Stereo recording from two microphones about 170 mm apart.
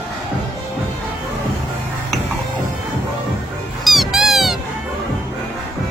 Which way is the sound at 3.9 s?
Centre (ahead or behind).